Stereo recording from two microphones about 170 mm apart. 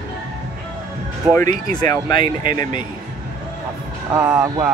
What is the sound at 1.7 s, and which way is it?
Speech, 25° left (ahead or behind).